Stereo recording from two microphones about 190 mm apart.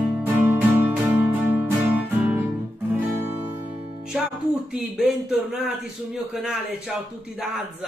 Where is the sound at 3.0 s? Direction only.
10° right (ahead or behind).